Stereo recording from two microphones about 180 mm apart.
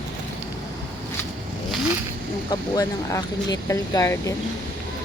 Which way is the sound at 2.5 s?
20° left (ahead or behind).